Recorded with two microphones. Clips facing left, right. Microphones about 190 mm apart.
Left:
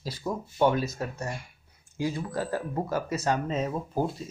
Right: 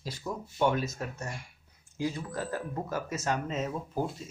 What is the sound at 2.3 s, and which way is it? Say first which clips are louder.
Speech: left 4 dB; 30° left (ahead or behind).